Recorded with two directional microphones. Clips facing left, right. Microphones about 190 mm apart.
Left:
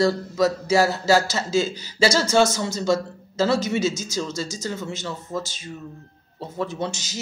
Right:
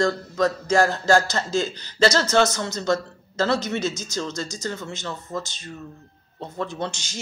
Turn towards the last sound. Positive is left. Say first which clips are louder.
# left 2 dB
turn(degrees=5)  # may be behind; listen again after turning